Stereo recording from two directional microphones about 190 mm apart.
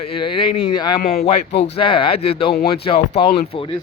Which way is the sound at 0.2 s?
25° left (ahead or behind).